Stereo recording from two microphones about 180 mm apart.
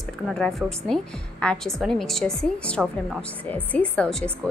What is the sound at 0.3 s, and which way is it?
A woman's voice, centre (ahead or behind).